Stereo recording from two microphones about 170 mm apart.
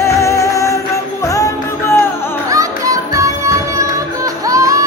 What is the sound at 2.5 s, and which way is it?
Music, 20° right (ahead or behind).